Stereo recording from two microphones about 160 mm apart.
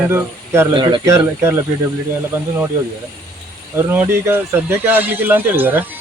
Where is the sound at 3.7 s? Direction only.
15° right (ahead or behind).